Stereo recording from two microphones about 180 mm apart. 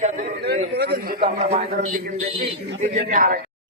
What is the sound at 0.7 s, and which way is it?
Speech, 60° right (ahead or behind).